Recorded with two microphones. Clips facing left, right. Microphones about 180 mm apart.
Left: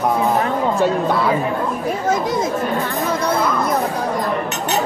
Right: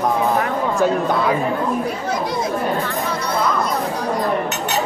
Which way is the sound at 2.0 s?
45° left (ahead or behind).